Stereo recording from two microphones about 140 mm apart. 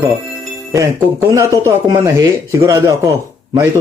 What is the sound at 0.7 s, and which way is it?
Speech, 20° right (ahead or behind).